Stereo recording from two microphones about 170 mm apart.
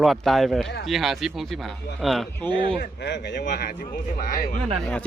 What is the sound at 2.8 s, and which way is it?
Speech, 80° left.